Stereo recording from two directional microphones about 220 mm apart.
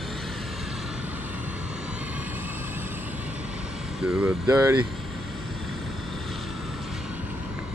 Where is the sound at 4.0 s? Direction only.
5° right (ahead or behind).